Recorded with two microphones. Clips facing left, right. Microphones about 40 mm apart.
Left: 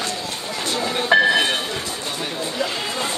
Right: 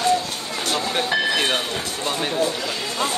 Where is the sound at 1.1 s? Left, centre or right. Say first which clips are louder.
Left 9 dB; left.